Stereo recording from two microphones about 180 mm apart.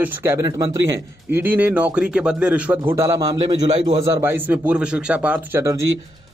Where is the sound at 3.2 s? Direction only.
30° right (ahead or behind).